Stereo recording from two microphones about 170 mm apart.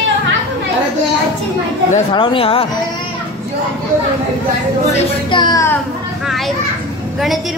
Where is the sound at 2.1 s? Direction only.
30° left (ahead or behind).